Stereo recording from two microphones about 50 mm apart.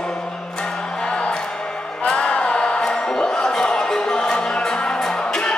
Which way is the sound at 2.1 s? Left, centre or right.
Left.